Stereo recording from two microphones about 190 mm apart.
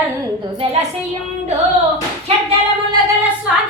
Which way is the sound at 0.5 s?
30° right (ahead or behind).